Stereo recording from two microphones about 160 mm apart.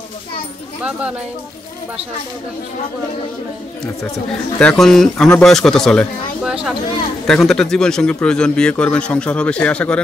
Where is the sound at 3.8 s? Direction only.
20° left (ahead or behind).